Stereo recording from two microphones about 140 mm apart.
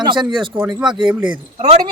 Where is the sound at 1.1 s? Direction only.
10° right (ahead or behind).